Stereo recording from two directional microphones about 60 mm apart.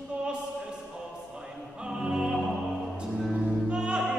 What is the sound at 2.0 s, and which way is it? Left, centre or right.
Music, centre.